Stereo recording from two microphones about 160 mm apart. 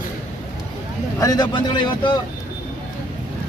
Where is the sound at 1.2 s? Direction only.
25° left (ahead or behind).